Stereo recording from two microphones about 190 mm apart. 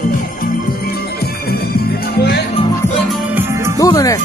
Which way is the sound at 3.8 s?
20° left (ahead or behind).